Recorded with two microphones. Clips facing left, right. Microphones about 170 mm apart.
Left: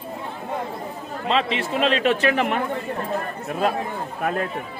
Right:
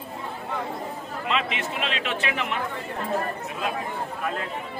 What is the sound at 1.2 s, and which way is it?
Speech, 35° left (ahead or behind).